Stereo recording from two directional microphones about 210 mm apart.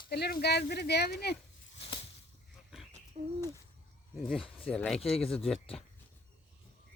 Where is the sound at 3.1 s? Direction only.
35° right (ahead or behind).